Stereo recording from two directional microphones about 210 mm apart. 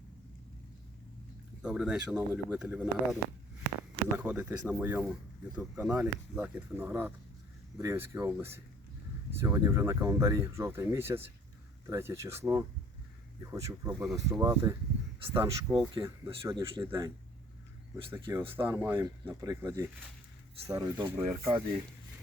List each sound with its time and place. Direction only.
1.6 s speech: 5° right (ahead or behind)
4.2 s speech: 5° right (ahead or behind)
18.1 s speech: 10° right (ahead or behind)